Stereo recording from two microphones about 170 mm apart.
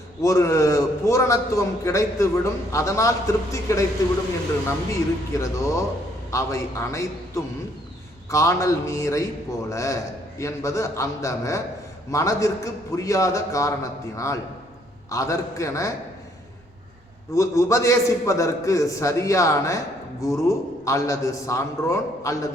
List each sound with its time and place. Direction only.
0.2 s a man's voice: 15° left (ahead or behind)
5.4 s a man's voice: 15° left (ahead or behind)
17.3 s a man's voice: 15° left (ahead or behind)